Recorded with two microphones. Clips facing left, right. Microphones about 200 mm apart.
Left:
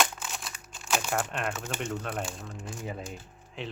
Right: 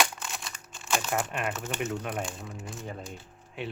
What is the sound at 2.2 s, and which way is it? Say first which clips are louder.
Speech: right 1 dB; centre (ahead or behind).